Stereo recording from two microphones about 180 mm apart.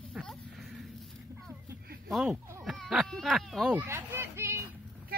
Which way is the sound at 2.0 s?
Centre (ahead or behind).